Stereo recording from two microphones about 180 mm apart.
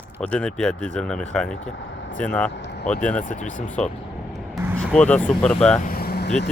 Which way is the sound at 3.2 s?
45° left (ahead or behind).